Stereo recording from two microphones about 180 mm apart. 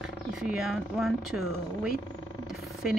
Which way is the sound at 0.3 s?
5° right (ahead or behind).